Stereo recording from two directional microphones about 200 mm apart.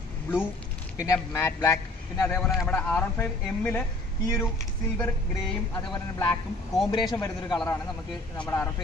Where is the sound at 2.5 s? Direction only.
Centre (ahead or behind).